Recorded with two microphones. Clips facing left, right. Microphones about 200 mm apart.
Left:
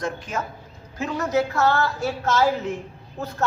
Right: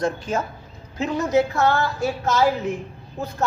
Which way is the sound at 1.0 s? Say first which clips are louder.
Right 3 dB; 20° right (ahead or behind).